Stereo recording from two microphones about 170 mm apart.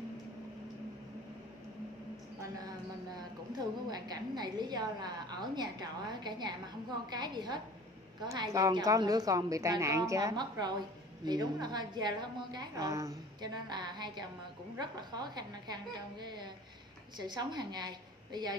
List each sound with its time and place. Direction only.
3.2 s a woman's voice: 25° right (ahead or behind)